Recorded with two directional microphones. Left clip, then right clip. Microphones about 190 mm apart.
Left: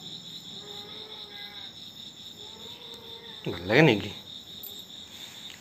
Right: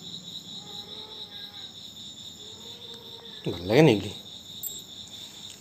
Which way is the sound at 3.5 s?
25° right (ahead or behind).